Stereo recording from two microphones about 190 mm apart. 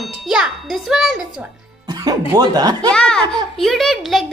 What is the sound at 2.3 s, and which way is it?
Speech, 20° right (ahead or behind).